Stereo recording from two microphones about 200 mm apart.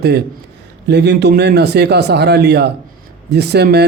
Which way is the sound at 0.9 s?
55° right (ahead or behind).